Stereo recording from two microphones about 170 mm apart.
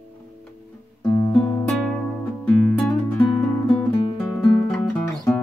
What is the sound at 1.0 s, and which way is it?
Music, 10° left (ahead or behind).